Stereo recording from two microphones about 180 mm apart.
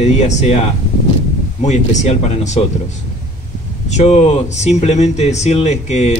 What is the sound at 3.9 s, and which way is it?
Speech, 40° left (ahead or behind).